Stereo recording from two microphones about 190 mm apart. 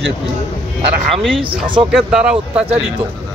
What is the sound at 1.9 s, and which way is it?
Speech, 5° right (ahead or behind).